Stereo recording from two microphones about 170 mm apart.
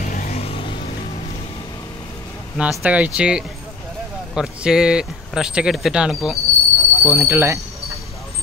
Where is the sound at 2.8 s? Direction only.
10° right (ahead or behind).